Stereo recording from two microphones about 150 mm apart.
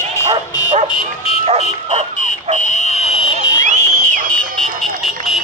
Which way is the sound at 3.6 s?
60° right (ahead or behind).